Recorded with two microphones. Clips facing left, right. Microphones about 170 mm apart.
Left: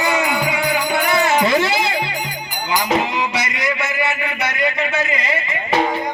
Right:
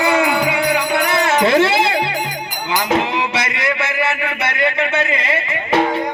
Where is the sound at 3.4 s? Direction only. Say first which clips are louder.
Right 2 dB; 65° right (ahead or behind).